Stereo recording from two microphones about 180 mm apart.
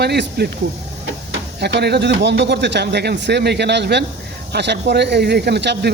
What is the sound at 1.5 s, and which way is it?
Speech, 65° right (ahead or behind).